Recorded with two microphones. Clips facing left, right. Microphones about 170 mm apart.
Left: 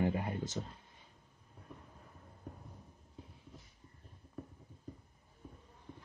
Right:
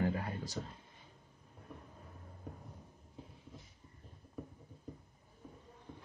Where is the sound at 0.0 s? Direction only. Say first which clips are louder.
Left 2 dB; 20° left (ahead or behind).